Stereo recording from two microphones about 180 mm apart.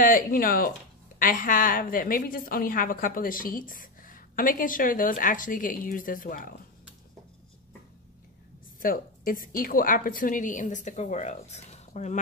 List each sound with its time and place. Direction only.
0.0 s a woman's voice: 50° left (ahead or behind)
8.7 s a woman's voice: 50° left (ahead or behind)